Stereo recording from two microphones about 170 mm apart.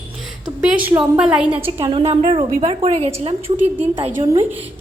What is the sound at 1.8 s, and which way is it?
A woman's voice, 30° right (ahead or behind).